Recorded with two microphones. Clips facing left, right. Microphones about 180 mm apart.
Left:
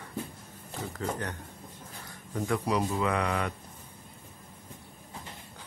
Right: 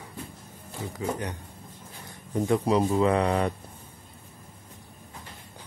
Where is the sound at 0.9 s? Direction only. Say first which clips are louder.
Right 3 dB; 15° right (ahead or behind).